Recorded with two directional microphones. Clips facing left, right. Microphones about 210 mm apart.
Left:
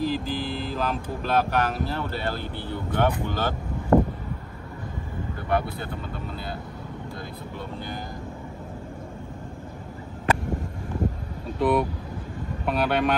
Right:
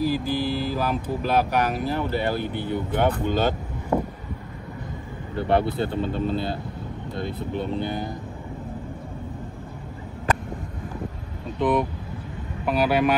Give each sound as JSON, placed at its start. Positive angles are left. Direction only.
{"t": 0.0, "sound": "speech", "side_deg": -10}
{"t": 3.9, "sound": "vehicle", "side_deg": -5}
{"t": 5.3, "sound": "speech", "side_deg": -30}
{"t": 11.5, "sound": "speech", "side_deg": 5}